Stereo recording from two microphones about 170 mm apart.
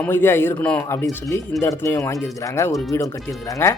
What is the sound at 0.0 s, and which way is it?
Speech, 10° left (ahead or behind).